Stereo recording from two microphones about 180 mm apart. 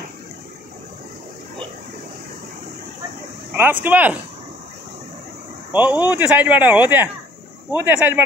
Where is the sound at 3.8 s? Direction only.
10° right (ahead or behind).